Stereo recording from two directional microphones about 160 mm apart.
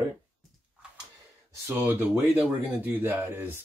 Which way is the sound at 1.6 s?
15° right (ahead or behind).